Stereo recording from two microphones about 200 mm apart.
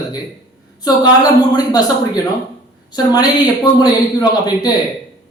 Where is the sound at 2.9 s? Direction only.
20° left (ahead or behind).